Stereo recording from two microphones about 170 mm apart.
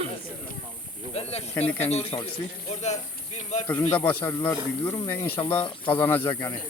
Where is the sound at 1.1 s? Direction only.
35° left (ahead or behind).